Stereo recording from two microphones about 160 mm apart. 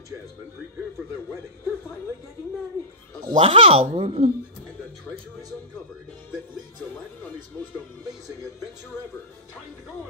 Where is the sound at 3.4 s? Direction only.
35° right (ahead or behind).